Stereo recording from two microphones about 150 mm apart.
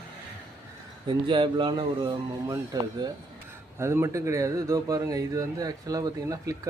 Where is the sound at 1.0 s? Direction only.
35° right (ahead or behind).